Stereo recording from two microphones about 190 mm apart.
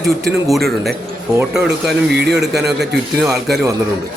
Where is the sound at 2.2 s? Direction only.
60° right (ahead or behind).